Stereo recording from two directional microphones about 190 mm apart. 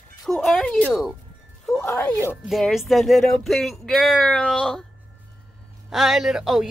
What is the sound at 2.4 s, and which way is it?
Speech, centre (ahead or behind).